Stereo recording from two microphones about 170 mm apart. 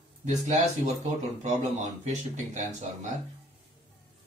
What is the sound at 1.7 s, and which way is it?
Speech, 40° right (ahead or behind).